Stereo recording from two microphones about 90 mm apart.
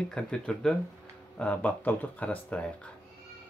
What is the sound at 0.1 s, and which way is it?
Speech, 10° left (ahead or behind).